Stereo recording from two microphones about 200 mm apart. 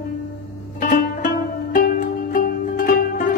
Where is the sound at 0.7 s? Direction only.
40° left (ahead or behind).